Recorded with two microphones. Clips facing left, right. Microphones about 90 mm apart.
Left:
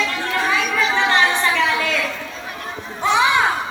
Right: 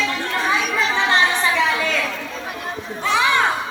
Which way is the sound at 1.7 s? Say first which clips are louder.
Left 1 dB; centre (ahead or behind).